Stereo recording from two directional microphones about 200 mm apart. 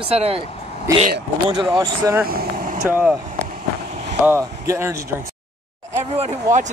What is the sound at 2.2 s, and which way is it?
Vehicle, 45° right (ahead or behind).